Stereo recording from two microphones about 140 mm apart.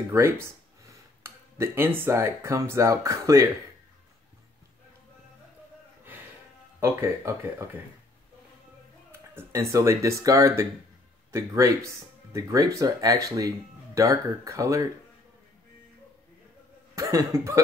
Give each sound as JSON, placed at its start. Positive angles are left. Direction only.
{"t": 0.1, "sound": "speech", "side_deg": -20}
{"t": 6.8, "sound": "speech", "side_deg": -20}
{"t": 9.1, "sound": "speech", "side_deg": -20}
{"t": 16.9, "sound": "speech", "side_deg": -20}